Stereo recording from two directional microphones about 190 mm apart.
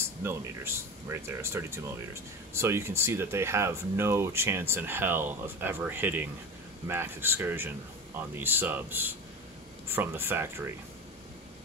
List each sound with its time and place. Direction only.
0.0 s speech: 15° right (ahead or behind)